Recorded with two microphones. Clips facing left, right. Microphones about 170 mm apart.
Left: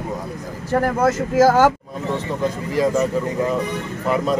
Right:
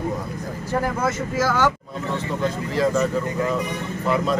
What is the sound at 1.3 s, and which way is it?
Speech, 45° left (ahead or behind).